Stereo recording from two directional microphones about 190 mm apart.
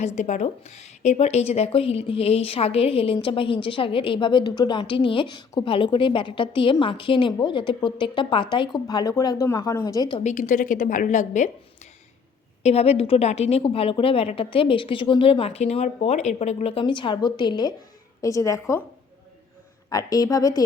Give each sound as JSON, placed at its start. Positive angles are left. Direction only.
{"t": 0.0, "sound": "speech", "side_deg": 40}
{"t": 10.2, "sound": "a woman's voice", "side_deg": 40}
{"t": 12.6, "sound": "speech", "side_deg": 30}
{"t": 19.9, "sound": "speech", "side_deg": 20}